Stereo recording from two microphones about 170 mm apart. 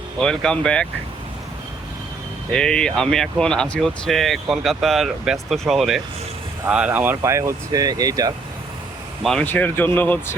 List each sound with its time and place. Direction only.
0.2 s speech: 5° left (ahead or behind)
2.5 s speech: 5° left (ahead or behind); by 8.3 s 20° right (ahead or behind)
9.2 s speech: 5° left (ahead or behind)